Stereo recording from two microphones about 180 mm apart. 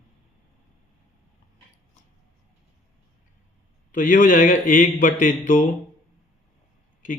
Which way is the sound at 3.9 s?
45° left (ahead or behind).